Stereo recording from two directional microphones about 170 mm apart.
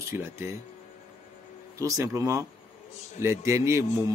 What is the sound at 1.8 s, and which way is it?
A man's voice, 20° right (ahead or behind).